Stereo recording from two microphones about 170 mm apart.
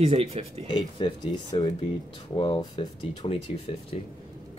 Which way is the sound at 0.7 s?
25° left (ahead or behind).